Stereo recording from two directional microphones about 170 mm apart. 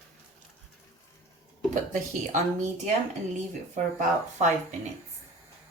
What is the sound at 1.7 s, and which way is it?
Speech, 45° right (ahead or behind).